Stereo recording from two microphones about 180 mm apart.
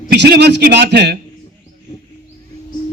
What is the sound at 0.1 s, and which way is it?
A man's voice, 65° right (ahead or behind).